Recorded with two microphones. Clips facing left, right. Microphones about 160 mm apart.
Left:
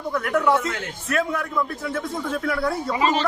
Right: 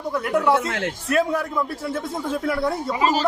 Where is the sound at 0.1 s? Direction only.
25° right (ahead or behind).